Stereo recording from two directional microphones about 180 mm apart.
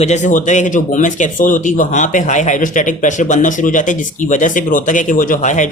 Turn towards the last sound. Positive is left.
turn(degrees=45)  # may be behind; listen again after turning